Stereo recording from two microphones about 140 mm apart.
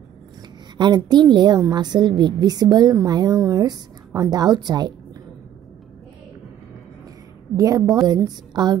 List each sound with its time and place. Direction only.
0.7 s a woman's voice: 30° right (ahead or behind)
7.5 s a woman's voice: 25° right (ahead or behind)